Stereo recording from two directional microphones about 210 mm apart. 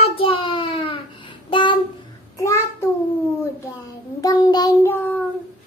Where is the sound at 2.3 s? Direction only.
15° left (ahead or behind).